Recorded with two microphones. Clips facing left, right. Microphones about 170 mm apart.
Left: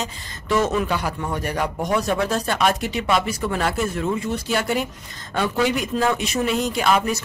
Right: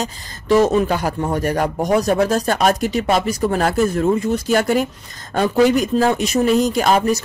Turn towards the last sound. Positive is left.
turn(degrees=-40)  # may be behind; listen again after turning